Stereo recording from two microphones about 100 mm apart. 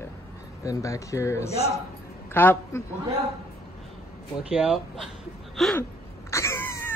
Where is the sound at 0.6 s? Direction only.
35° left (ahead or behind).